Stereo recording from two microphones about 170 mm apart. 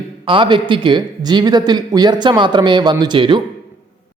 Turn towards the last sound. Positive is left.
turn(degrees=-30)  # may be behind; listen again after turning